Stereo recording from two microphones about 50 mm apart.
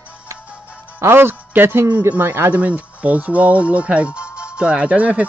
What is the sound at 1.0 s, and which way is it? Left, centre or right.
Speech, right.